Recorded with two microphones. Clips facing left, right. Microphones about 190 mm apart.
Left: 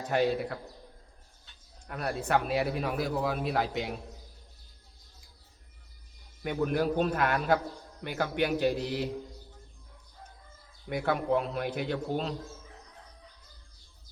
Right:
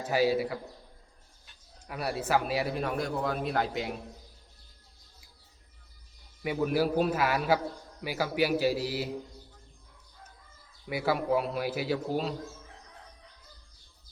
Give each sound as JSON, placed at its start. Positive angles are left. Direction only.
{"t": 0.0, "sound": "a man's voice", "side_deg": -5}
{"t": 1.9, "sound": "a man's voice", "side_deg": -5}
{"t": 6.4, "sound": "a man's voice", "side_deg": -5}
{"t": 10.8, "sound": "a man's voice", "side_deg": -5}